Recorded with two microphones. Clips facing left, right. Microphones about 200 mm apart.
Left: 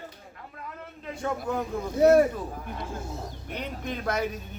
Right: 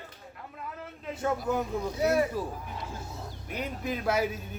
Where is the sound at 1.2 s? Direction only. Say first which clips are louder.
Right 1 dB; 5° right (ahead or behind).